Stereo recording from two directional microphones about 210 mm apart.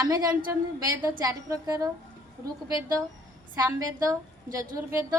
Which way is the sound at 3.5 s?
20° right (ahead or behind).